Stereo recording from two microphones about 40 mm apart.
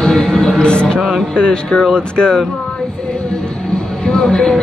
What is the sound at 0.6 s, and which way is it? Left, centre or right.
Speech, left.